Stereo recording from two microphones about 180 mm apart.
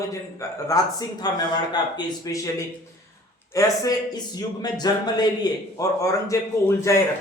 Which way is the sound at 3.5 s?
20° left (ahead or behind).